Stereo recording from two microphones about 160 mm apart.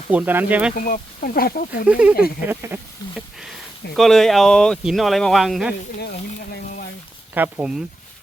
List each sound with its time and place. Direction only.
0.1 s speech: 10° right (ahead or behind)
0.8 s speech: 60° left (ahead or behind)
1.9 s speech: 10° right (ahead or behind)
3.9 s speech: centre (ahead or behind)
7.3 s speech: 10° right (ahead or behind)